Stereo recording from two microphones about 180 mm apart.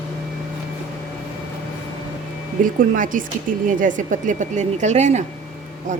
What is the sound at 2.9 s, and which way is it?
A woman's voice, 50° right (ahead or behind).